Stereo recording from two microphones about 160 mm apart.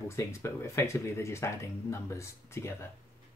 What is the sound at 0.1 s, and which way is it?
Speech, 20° left (ahead or behind).